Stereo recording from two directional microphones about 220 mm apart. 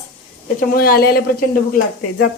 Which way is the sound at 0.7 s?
45° left (ahead or behind).